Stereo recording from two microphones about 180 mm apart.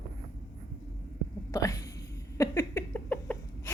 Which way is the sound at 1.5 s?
20° left (ahead or behind).